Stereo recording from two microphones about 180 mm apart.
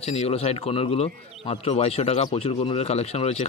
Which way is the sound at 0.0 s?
35° left (ahead or behind).